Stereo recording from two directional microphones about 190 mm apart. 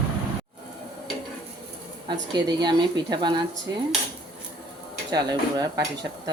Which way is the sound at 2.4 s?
20° right (ahead or behind).